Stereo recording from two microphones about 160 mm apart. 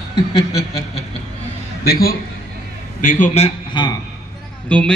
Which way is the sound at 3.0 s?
55° left (ahead or behind).